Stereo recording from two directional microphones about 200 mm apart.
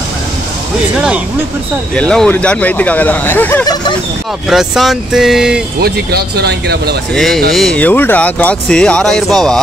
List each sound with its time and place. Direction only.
2.0 s speech: 5° left (ahead or behind)
4.5 s speech: centre (ahead or behind)
5.8 s speech: 50° right (ahead or behind)
7.2 s speech: centre (ahead or behind)